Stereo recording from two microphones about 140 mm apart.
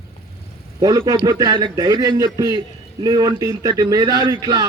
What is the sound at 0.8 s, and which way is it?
A man's voice, 25° right (ahead or behind).